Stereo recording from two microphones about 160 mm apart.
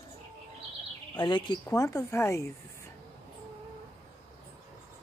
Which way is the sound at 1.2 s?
30° left (ahead or behind).